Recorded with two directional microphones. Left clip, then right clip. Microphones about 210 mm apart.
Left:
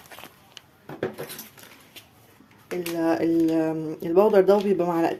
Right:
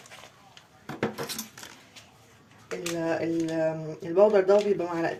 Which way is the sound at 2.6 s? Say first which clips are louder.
Left 5 dB; 45° left (ahead or behind).